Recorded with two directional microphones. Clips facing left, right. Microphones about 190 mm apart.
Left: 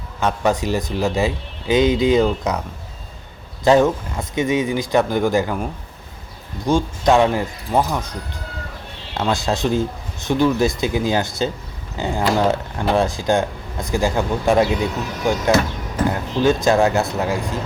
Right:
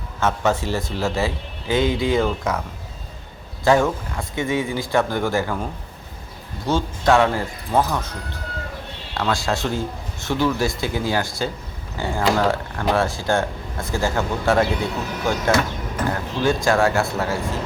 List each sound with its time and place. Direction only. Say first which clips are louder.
0.2 s speech: left 2 dB; 15° left (ahead or behind)
3.6 s speech: left 3 dB; 20° left (ahead or behind)
6.7 s speech: left 2 dB; 15° left (ahead or behind)
9.1 s speech: left 2 dB; 20° left (ahead or behind)